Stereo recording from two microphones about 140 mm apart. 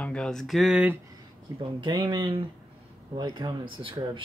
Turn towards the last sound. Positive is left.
turn(degrees=-35)  # may be behind; listen again after turning